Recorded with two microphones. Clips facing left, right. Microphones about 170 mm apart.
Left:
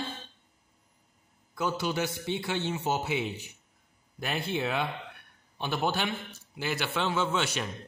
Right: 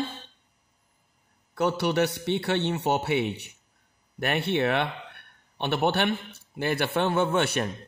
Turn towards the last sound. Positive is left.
turn(degrees=-55)  # may be behind; listen again after turning